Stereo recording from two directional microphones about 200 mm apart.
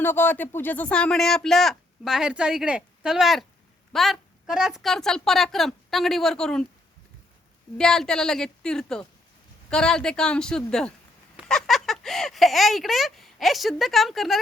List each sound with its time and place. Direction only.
0.0 s speech: 10° left (ahead or behind)
7.8 s speech: 5° left (ahead or behind)